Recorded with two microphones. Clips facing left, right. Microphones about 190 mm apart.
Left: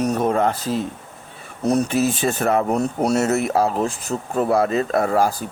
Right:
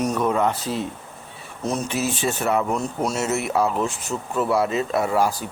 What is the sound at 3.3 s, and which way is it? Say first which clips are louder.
Speech: left 3 dB; 40° left (ahead or behind).